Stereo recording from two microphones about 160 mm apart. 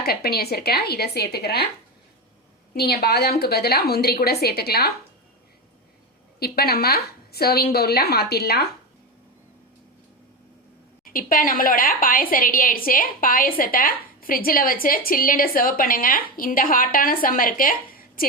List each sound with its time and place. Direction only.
0.0 s a woman's voice: 75° left (ahead or behind)
2.7 s a woman's voice: 85° left
6.4 s a woman's voice: 75° left (ahead or behind)
11.0 s a woman's voice: 60° left (ahead or behind)